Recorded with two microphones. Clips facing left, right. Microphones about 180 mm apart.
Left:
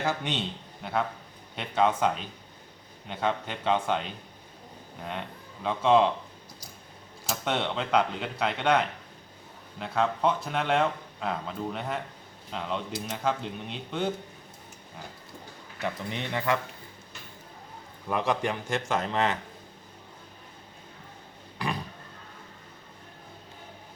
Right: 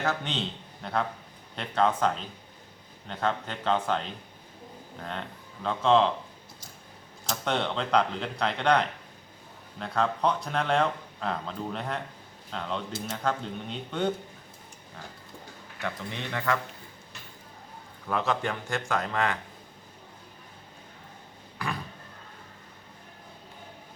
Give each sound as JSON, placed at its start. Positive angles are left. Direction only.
{"t": 0.0, "sound": "a man's voice", "side_deg": 10}
{"t": 7.3, "sound": "speech", "side_deg": 5}
{"t": 15.8, "sound": "a man's voice", "side_deg": 20}
{"t": 18.1, "sound": "a man's voice", "side_deg": 15}